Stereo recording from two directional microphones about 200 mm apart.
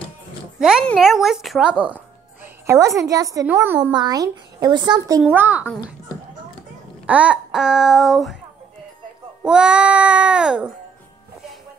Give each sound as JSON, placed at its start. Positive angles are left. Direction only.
{"t": 0.6, "sound": "a woman's voice", "side_deg": -5}
{"t": 3.9, "sound": "a woman's voice", "side_deg": -20}
{"t": 7.1, "sound": "speech", "side_deg": -5}
{"t": 9.4, "sound": "speech", "side_deg": -5}